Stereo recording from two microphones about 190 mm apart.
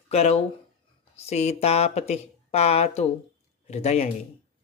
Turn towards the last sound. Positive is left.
turn(degrees=35)  # may be behind; listen again after turning